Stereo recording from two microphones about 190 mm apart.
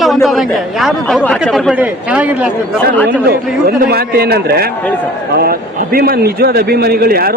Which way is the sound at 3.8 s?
55° right (ahead or behind).